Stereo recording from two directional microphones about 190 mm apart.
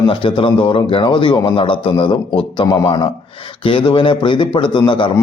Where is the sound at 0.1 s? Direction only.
25° left (ahead or behind).